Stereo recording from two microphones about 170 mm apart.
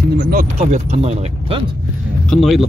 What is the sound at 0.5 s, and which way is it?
Speech, 40° right (ahead or behind).